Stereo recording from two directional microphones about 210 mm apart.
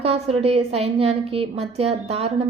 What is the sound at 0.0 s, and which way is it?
A woman's voice, 30° right (ahead or behind).